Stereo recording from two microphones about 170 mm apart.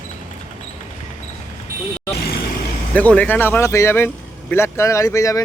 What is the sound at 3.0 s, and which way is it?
Speech, 10° left (ahead or behind).